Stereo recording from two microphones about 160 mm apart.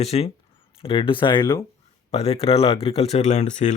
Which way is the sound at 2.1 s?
40° left (ahead or behind).